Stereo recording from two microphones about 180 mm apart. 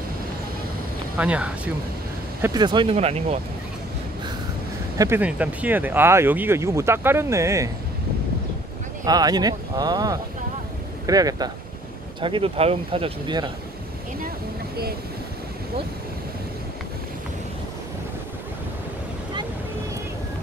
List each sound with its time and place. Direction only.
1.1 s speech: 5° right (ahead or behind)
2.4 s speech: 25° right (ahead or behind)
4.9 s speech: 20° right (ahead or behind)
9.0 s speech: 20° right (ahead or behind)